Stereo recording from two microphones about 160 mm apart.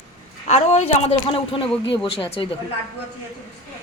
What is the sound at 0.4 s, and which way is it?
A woman's voice, 45° left (ahead or behind).